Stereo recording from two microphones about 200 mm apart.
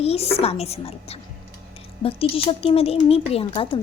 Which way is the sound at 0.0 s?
30° left (ahead or behind).